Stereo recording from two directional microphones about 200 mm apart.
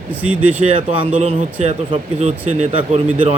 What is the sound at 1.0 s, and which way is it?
Speech, 30° right (ahead or behind).